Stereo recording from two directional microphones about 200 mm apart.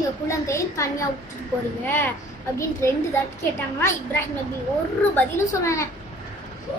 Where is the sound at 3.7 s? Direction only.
10° left (ahead or behind).